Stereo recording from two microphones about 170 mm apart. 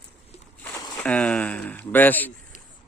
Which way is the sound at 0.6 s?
10° left (ahead or behind).